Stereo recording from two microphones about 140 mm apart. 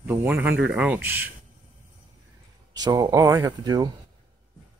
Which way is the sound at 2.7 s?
30° right (ahead or behind).